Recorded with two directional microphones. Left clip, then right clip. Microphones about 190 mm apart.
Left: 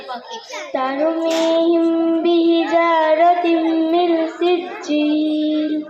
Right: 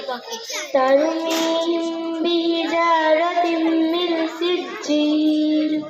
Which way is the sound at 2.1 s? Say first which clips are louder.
Left 5 dB; 30° right (ahead or behind).